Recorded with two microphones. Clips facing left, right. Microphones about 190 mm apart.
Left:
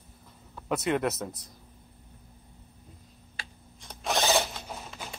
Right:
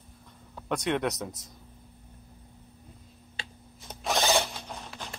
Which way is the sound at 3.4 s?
25° right (ahead or behind).